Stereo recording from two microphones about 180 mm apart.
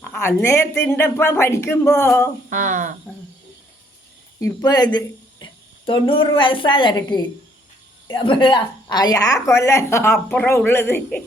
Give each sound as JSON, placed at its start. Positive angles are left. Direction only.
{"t": 0.0, "sound": "speech", "side_deg": 10}
{"t": 2.5, "sound": "speech", "side_deg": -45}
{"t": 4.4, "sound": "a woman's voice", "side_deg": 20}